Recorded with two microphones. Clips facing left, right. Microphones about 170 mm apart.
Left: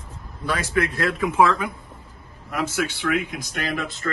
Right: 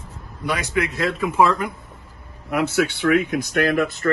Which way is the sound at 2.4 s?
65° right (ahead or behind).